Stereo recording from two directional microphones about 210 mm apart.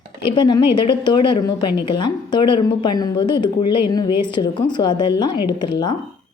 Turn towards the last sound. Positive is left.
turn(degrees=20)  # may be behind; listen again after turning